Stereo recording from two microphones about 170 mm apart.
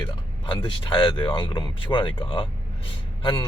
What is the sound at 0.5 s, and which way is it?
Speech, 30° left (ahead or behind).